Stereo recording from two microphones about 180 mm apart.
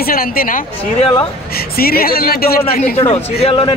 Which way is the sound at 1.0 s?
30° left (ahead or behind).